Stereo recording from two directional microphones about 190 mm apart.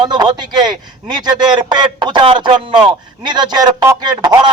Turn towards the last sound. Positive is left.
turn(degrees=-20)  # may be behind; listen again after turning